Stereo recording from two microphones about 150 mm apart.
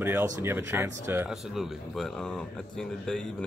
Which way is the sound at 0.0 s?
15° right (ahead or behind).